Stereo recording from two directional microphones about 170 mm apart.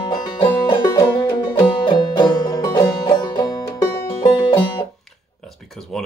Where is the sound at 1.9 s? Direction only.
25° left (ahead or behind).